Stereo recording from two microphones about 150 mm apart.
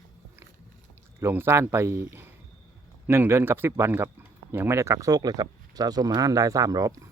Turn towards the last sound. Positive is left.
turn(degrees=-25)  # may be behind; listen again after turning